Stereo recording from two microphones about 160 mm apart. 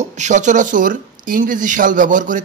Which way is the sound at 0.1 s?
50° right (ahead or behind).